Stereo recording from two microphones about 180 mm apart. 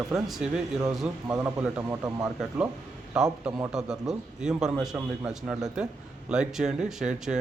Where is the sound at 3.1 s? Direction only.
5° right (ahead or behind).